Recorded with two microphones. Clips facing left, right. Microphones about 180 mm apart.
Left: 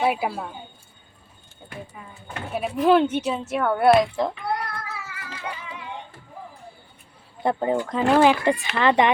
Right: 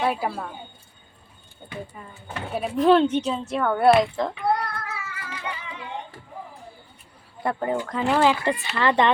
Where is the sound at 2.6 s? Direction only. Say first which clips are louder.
Right 1 dB; 5° left (ahead or behind).